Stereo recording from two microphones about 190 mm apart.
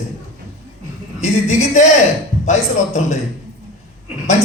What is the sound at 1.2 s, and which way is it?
Speech, 40° left (ahead or behind).